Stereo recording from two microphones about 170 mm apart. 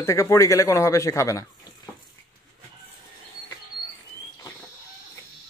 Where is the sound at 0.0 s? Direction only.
15° left (ahead or behind).